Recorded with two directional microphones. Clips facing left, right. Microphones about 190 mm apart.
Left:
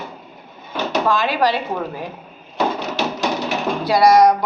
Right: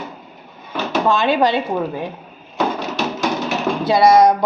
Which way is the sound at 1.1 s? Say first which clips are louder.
Right 3 dB; 25° right (ahead or behind).